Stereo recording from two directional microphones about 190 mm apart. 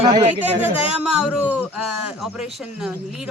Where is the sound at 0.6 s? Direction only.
5° right (ahead or behind).